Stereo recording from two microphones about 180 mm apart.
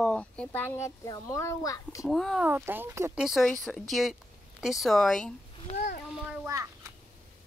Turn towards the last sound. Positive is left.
turn(degrees=-15)  # may be behind; listen again after turning